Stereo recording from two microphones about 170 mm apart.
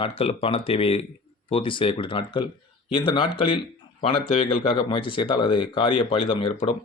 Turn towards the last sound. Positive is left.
turn(degrees=30)  # may be behind; listen again after turning